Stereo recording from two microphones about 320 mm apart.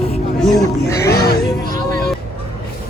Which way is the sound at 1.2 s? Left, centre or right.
Left.